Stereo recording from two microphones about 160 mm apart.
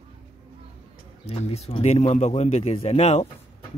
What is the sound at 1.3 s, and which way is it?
A man's voice, 40° left (ahead or behind).